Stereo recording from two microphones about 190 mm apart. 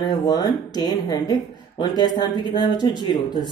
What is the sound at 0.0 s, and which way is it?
Speech, 20° left (ahead or behind).